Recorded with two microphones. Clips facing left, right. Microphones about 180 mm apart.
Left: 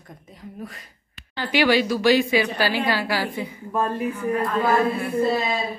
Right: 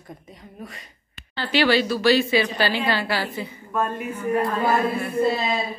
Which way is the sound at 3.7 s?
35° left (ahead or behind).